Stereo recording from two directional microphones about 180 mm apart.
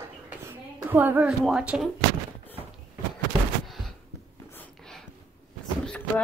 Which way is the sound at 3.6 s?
Centre (ahead or behind).